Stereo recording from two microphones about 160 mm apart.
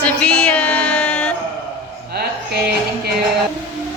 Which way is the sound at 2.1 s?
85° right.